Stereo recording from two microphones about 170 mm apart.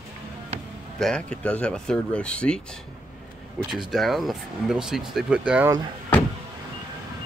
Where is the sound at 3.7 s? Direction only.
Centre (ahead or behind).